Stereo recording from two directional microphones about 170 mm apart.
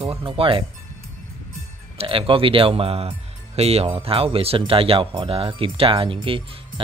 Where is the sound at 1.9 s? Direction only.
30° right (ahead or behind).